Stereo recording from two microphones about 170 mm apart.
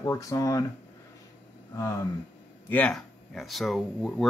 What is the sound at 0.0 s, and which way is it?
Speech, 15° left (ahead or behind).